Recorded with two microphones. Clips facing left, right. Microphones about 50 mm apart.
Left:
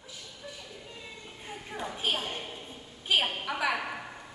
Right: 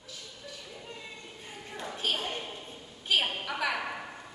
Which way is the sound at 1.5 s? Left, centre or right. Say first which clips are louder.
Left 3 dB; centre.